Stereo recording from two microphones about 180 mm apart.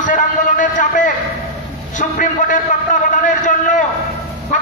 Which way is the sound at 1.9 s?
45° left (ahead or behind).